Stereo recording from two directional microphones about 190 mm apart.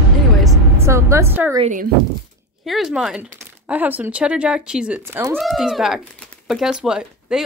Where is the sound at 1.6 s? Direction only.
40° right (ahead or behind).